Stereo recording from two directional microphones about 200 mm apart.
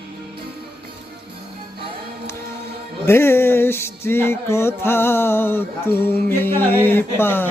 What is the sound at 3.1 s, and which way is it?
Music, 10° left (ahead or behind).